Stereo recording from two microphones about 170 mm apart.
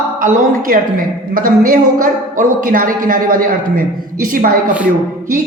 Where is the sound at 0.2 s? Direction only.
50° right (ahead or behind).